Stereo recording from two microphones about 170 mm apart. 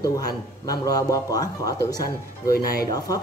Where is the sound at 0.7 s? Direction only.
20° left (ahead or behind).